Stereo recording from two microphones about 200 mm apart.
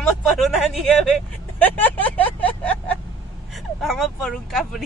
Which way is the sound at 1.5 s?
10° left (ahead or behind).